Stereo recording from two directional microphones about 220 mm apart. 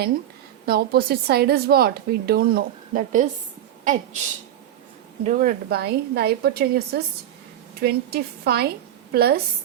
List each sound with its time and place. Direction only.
0.6 s a woman's voice: 45° right (ahead or behind)
5.2 s a woman's voice: 40° right (ahead or behind)